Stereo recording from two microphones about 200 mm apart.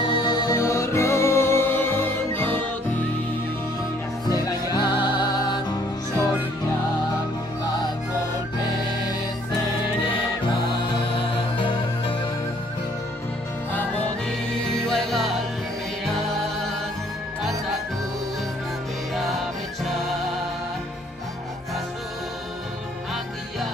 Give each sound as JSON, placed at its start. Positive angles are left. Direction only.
{"t": 0.1, "sound": "music", "side_deg": 20}
{"t": 4.3, "sound": "music", "side_deg": 20}
{"t": 11.5, "sound": "music", "side_deg": 25}
{"t": 14.8, "sound": "music", "side_deg": 0}
{"t": 19.1, "sound": "music", "side_deg": 0}